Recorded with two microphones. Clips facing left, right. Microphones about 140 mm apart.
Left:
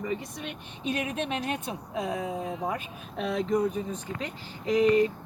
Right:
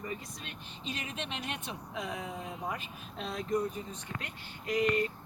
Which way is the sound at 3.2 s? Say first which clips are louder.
Left 7 dB; 70° left (ahead or behind).